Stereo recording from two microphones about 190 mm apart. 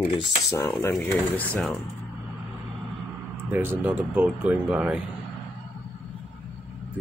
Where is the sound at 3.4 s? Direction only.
10° right (ahead or behind).